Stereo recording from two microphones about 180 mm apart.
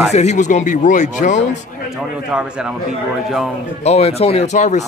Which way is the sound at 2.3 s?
5° right (ahead or behind).